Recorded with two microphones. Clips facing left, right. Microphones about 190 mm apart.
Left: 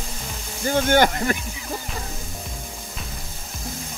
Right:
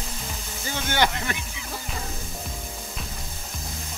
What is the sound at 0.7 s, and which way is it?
Speech, 50° left (ahead or behind).